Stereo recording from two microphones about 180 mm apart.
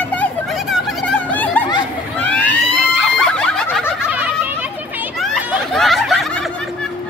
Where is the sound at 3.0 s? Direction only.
5° left (ahead or behind).